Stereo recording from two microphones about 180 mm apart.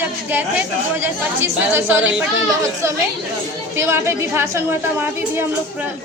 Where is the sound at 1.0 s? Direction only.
10° right (ahead or behind).